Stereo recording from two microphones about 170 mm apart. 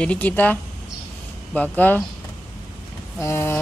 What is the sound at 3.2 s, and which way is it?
Speech, 15° left (ahead or behind).